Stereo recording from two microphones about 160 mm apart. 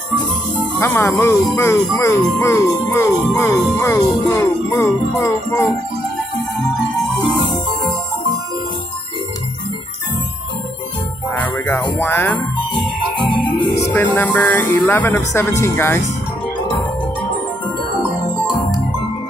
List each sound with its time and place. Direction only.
0.7 s speech: 15° left (ahead or behind)
11.3 s speech: 10° left (ahead or behind)
12.7 s music: 30° left (ahead or behind)
13.9 s speech: 10° left (ahead or behind)